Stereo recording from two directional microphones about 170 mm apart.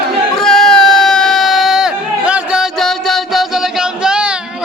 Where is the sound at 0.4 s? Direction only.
5° left (ahead or behind).